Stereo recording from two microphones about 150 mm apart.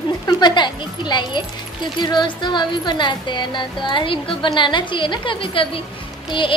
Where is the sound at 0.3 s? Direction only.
30° left (ahead or behind).